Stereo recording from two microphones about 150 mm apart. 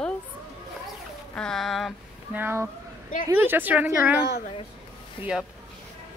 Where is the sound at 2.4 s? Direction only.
15° right (ahead or behind).